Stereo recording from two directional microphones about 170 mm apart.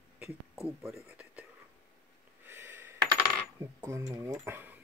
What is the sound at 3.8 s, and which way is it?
Speech, 15° right (ahead or behind).